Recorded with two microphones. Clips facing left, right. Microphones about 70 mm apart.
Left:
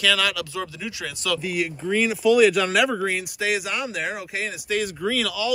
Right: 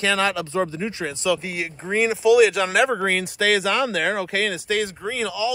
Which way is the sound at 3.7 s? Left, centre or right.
Right.